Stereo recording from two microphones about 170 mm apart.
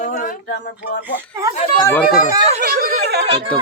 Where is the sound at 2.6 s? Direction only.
60° right (ahead or behind).